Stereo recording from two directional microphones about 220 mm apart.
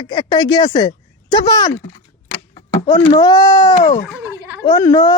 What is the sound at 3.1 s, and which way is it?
A woman's voice, 15° left (ahead or behind).